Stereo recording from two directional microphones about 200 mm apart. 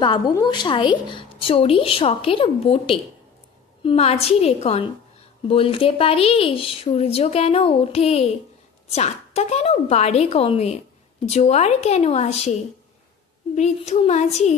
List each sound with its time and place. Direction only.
0.0 s a woman's voice: 25° left (ahead or behind)
13.6 s a woman's voice: 35° left (ahead or behind)